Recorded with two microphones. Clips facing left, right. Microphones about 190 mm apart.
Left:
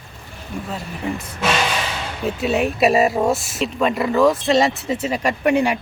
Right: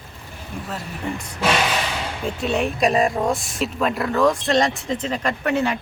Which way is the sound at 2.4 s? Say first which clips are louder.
Left 3 dB; 5° left (ahead or behind).